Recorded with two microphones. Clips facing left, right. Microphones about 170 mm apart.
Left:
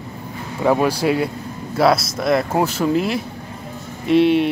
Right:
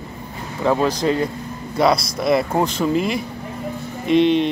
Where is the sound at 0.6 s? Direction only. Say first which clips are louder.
Left 1 dB; 10° left (ahead or behind).